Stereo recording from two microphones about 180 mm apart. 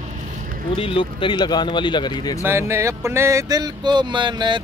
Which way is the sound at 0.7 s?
30° left (ahead or behind).